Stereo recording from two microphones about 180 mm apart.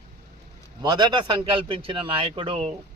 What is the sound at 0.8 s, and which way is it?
A man's voice, 25° right (ahead or behind).